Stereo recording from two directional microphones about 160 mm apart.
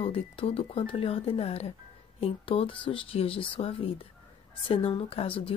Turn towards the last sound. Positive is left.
turn(degrees=35)  # may be behind; listen again after turning